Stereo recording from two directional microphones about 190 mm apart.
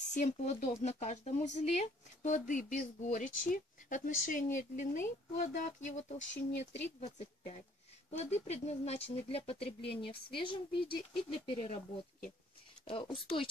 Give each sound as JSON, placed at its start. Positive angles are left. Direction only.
{"t": 0.1, "sound": "speech", "side_deg": 40}
{"t": 12.8, "sound": "speech", "side_deg": 25}